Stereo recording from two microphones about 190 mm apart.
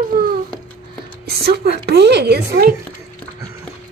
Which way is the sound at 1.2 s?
55° right (ahead or behind).